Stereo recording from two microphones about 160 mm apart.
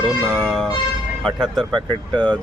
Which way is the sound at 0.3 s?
Centre (ahead or behind).